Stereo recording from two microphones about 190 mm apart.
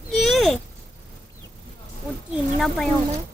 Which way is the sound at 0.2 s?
Centre (ahead or behind).